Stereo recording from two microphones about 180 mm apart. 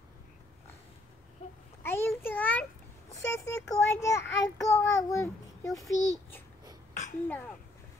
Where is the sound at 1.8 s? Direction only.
15° left (ahead or behind).